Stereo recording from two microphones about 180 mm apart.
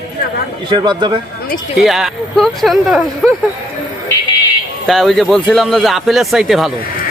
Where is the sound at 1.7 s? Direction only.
Centre (ahead or behind).